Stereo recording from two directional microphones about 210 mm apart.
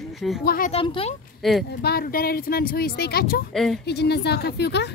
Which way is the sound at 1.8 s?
45° left (ahead or behind).